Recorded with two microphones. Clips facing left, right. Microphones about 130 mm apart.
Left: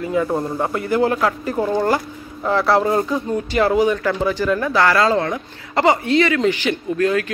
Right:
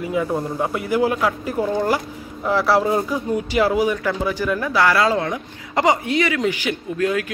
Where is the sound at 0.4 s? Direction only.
5° left (ahead or behind).